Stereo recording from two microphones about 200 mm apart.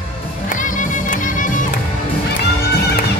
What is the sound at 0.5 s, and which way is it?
Music, 40° left (ahead or behind).